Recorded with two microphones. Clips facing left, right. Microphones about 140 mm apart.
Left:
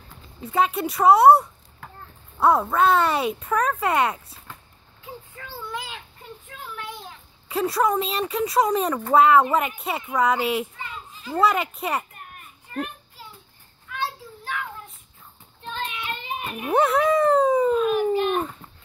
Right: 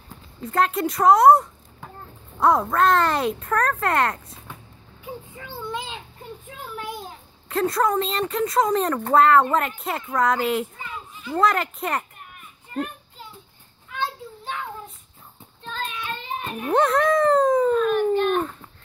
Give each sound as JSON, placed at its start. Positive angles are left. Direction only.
{"t": 0.4, "sound": "speech", "side_deg": 5}
{"t": 5.0, "sound": "a sound", "side_deg": -15}
{"t": 7.4, "sound": "speech", "side_deg": 10}
{"t": 10.8, "sound": "children playing", "side_deg": 35}
{"t": 11.3, "sound": "speech", "side_deg": 5}
{"t": 13.9, "sound": "children playing", "side_deg": -25}
{"t": 15.6, "sound": "child singing", "side_deg": 20}